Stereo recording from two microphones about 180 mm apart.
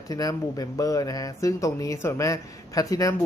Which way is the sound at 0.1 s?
20° left (ahead or behind).